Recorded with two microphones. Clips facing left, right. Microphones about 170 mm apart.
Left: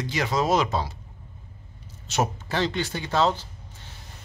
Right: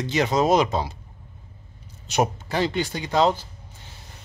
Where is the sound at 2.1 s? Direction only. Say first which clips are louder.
Right 3 dB; 15° right (ahead or behind).